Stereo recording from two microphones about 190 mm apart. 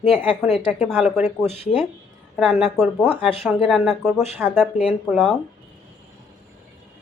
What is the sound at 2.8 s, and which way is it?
A woman's voice, 10° right (ahead or behind).